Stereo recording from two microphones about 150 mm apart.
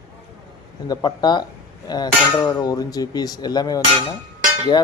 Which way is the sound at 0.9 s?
30° left (ahead or behind).